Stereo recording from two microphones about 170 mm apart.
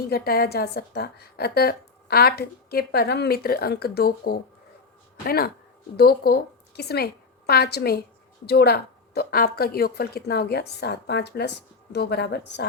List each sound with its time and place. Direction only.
0.1 s a woman's voice: 65° left (ahead or behind)